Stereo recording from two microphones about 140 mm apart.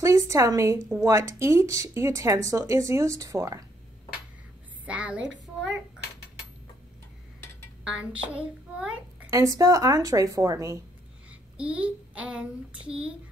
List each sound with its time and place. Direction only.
0.0 s a woman's voice: 20° right (ahead or behind)
4.8 s a woman's voice: 10° right (ahead or behind)
7.8 s a child's voice: 5° right (ahead or behind)
9.3 s speech: 25° right (ahead or behind)
11.2 s child singing: 10° right (ahead or behind)